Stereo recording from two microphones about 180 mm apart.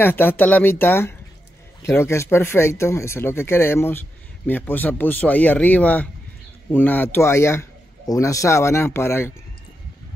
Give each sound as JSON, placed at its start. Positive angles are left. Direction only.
{"t": 0.0, "sound": "speech", "side_deg": 10}